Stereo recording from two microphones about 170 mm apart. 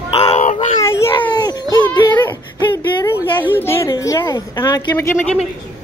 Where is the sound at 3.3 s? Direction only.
10° left (ahead or behind).